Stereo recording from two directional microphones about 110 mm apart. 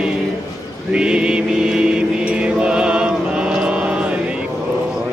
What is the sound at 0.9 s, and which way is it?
Music, 10° right (ahead or behind).